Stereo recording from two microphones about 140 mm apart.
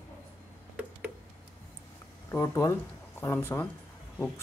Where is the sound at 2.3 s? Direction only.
20° left (ahead or behind).